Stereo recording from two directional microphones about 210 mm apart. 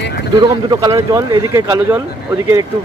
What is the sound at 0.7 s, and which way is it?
Speech, 15° right (ahead or behind).